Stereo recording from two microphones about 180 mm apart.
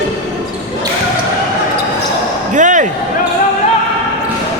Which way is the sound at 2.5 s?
45° right (ahead or behind).